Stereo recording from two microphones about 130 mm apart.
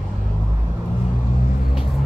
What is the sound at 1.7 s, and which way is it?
Vehicle, centre (ahead or behind).